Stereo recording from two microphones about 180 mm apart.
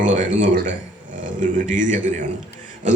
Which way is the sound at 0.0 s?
45° right (ahead or behind).